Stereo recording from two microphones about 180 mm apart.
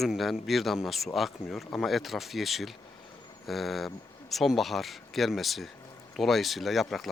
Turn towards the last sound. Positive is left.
turn(degrees=0)  # may be behind; listen again after turning